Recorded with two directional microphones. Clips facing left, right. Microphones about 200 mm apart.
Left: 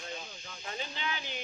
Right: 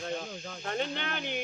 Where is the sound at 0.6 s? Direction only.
60° right (ahead or behind).